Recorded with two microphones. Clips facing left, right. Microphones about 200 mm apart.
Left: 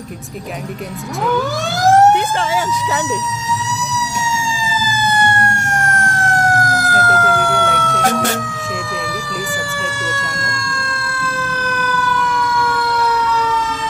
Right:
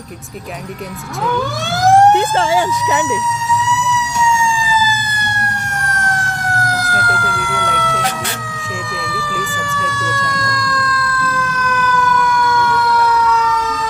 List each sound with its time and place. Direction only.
6.7 s emergency vehicle: 45° left (ahead or behind)
11.6 s fire engine: 35° left (ahead or behind)